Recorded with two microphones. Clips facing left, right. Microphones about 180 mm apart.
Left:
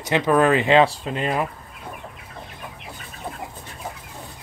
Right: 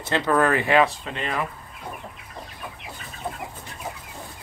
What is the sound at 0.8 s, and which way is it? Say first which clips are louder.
Speech: left 4 dB; 35° left (ahead or behind).